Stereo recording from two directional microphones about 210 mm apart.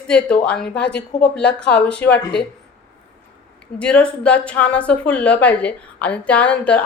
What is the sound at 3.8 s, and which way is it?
A woman's voice, 5° left (ahead or behind).